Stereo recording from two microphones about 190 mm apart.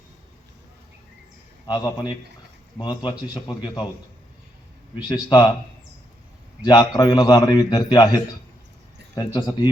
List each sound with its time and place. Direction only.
1.6 s a man's voice: 20° left (ahead or behind)
4.9 s a man's voice: 25° left (ahead or behind)
6.7 s a man's voice: 20° left (ahead or behind)